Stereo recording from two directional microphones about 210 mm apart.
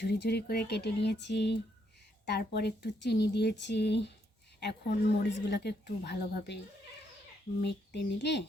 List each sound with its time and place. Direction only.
0.0 s a woman's voice: 50° left (ahead or behind)
7.6 s a woman's voice: 55° left (ahead or behind)